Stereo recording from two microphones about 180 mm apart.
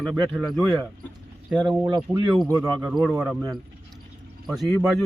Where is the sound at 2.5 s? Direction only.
20° right (ahead or behind).